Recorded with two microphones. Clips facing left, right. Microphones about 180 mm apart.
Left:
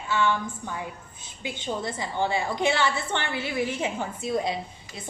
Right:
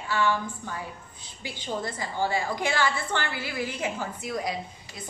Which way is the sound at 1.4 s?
25° left (ahead or behind).